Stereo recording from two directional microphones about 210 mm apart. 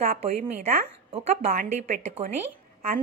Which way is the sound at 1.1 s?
30° right (ahead or behind).